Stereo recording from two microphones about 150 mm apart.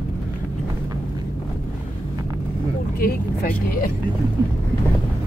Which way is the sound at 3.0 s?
75° left (ahead or behind).